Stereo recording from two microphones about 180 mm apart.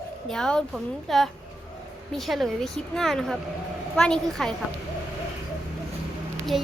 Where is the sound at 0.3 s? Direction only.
5° left (ahead or behind).